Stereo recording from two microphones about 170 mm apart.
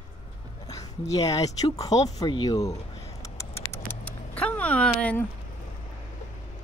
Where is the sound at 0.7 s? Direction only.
20° left (ahead or behind).